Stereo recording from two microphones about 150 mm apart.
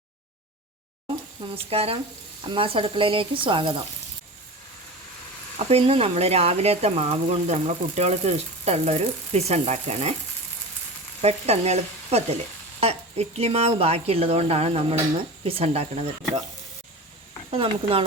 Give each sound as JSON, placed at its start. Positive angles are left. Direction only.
{"t": 1.7, "sound": "speech", "side_deg": -40}
{"t": 5.5, "sound": "speech", "side_deg": -40}
{"t": 11.2, "sound": "speech", "side_deg": -45}
{"t": 17.5, "sound": "speech", "side_deg": -40}